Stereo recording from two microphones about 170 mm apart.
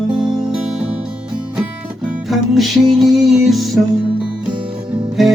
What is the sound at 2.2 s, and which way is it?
Music, centre (ahead or behind).